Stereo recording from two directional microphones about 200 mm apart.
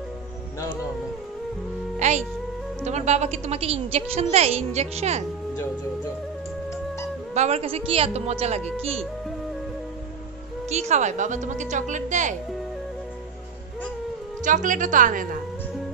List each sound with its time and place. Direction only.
2.0 s music: 35° right (ahead or behind)
2.8 s a woman's voice: 35° right (ahead or behind)
7.3 s a woman's voice: 30° right (ahead or behind)
10.7 s a woman's voice: 35° right (ahead or behind)
14.4 s a woman's voice: 40° right (ahead or behind)